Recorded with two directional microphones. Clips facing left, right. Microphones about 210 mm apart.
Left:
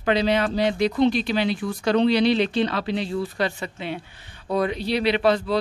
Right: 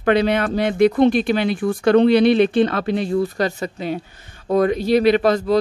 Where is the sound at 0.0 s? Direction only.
55° right (ahead or behind).